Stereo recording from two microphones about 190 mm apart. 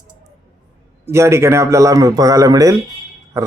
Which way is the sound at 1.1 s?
15° right (ahead or behind).